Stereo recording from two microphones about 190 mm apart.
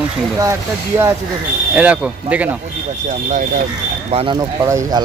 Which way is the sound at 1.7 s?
5° right (ahead or behind).